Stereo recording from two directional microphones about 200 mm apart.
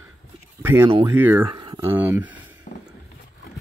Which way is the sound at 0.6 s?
10° right (ahead or behind).